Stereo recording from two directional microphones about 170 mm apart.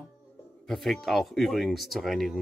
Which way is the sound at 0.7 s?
Centre (ahead or behind).